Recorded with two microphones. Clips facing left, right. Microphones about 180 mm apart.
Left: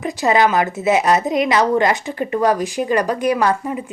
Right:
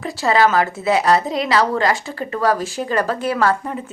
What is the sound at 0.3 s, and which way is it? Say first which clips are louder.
A woman's voice: even; 20° left (ahead or behind).